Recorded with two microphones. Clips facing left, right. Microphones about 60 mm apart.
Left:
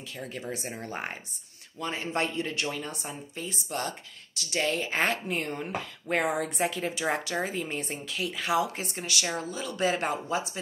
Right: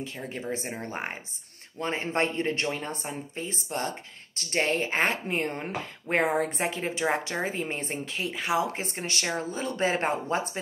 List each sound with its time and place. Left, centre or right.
0.0 s speech: right
4.4 s speech: right
10.2 s speech: right